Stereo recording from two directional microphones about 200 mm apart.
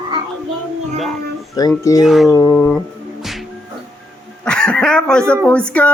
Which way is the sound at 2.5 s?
10° left (ahead or behind).